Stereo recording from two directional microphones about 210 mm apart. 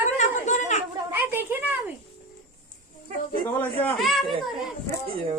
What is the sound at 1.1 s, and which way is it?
Speech, 10° right (ahead or behind).